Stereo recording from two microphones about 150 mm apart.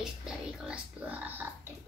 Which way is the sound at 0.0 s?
5° right (ahead or behind).